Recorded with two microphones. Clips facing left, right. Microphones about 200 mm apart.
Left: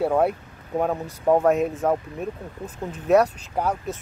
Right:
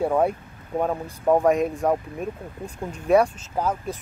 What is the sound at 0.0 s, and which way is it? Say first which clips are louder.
Speech: left 1 dB; 5° left (ahead or behind).